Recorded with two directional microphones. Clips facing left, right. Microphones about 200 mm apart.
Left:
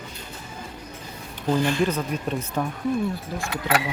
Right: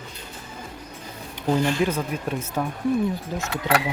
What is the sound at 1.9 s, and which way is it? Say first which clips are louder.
Speech: even; 10° right (ahead or behind).